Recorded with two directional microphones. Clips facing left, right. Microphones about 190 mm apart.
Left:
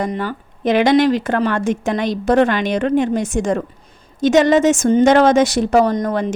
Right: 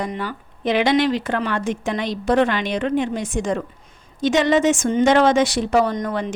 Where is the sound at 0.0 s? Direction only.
45° left (ahead or behind).